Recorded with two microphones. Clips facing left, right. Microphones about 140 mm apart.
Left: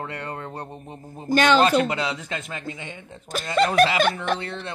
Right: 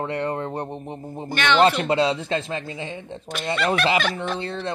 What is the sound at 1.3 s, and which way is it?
Speech, 40° left (ahead or behind).